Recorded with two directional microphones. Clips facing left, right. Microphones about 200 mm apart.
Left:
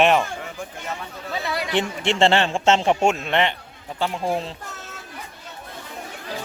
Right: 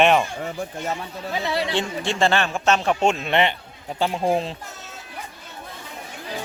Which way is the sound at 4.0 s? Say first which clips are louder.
Right 3 dB; 15° right (ahead or behind).